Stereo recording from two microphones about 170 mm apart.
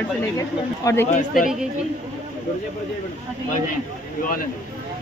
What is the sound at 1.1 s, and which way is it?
Speech, 50° left (ahead or behind).